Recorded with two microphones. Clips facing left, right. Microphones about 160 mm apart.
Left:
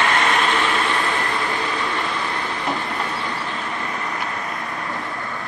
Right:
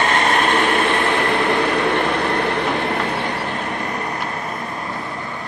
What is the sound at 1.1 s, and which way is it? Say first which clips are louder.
Train: right 6 dB; 65° right (ahead or behind).